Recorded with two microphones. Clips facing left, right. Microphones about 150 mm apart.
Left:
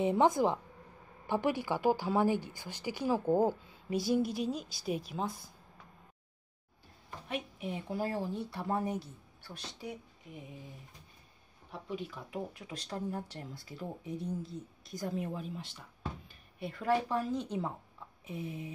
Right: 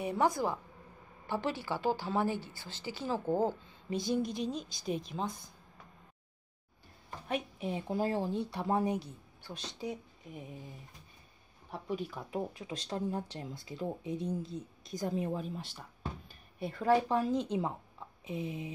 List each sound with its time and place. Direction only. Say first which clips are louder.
0.0 s a woman's voice: left 4 dB; 20° left (ahead or behind); by 5.5 s 5° left (ahead or behind)
7.2 s a woman's voice: right 3 dB; 35° right (ahead or behind)
11.9 s speech: right 3 dB; 45° right (ahead or behind)
12.5 s a woman's voice: right 3 dB; 25° right (ahead or behind)
15.2 s a woman's voice: right 3 dB; 35° right (ahead or behind); by 18.7 s 20° right (ahead or behind)